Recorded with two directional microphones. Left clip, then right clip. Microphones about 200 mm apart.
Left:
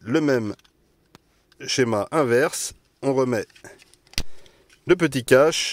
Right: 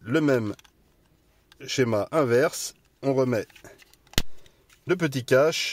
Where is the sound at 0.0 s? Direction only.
10° left (ahead or behind).